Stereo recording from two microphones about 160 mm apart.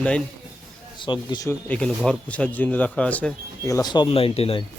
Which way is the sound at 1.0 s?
30° left (ahead or behind).